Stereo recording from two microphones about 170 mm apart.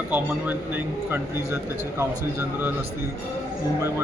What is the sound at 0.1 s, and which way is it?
A man's voice, 10° right (ahead or behind).